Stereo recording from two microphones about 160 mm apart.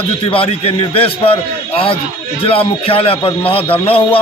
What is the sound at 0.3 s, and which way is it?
A man's voice, 35° left (ahead or behind).